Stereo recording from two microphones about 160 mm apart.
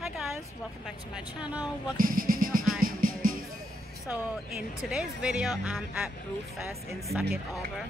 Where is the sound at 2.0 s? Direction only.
60° right (ahead or behind).